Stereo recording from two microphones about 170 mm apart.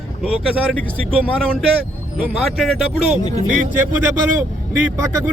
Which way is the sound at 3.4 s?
45° right (ahead or behind).